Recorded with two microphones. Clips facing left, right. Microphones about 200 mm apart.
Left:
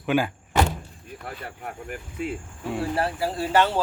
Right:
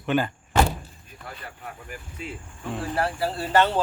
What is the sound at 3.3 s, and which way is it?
Speech, 10° left (ahead or behind).